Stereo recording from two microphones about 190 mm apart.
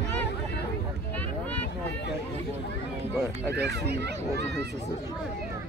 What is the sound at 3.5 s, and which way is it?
Speech, 60° right (ahead or behind).